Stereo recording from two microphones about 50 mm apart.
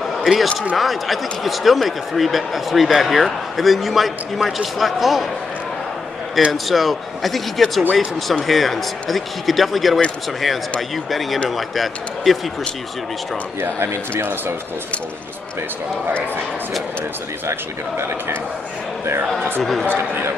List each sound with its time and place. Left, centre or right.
0.2 s a man's voice: centre
6.5 s speech: centre
11.1 s speech: centre
13.6 s speech: right
17.5 s speech: right
19.6 s speech: centre
19.9 s speech: right